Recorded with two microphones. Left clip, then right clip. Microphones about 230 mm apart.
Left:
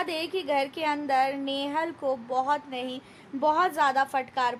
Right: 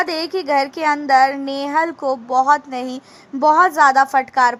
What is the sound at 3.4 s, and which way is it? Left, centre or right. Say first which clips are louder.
Speech: right 11 dB; right.